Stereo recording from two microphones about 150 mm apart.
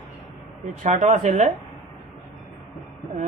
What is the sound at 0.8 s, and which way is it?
Speech, 50° right (ahead or behind).